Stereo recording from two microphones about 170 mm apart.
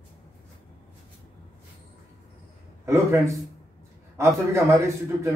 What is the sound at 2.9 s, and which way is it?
Speech, 15° right (ahead or behind).